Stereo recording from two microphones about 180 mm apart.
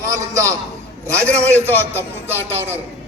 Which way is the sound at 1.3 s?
15° right (ahead or behind).